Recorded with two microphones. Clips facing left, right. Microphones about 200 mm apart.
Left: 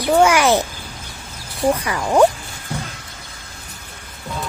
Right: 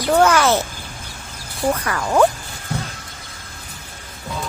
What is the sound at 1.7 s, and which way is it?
Speech, 10° left (ahead or behind).